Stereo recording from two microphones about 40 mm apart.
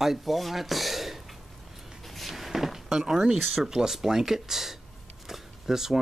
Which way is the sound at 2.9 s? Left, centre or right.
Centre.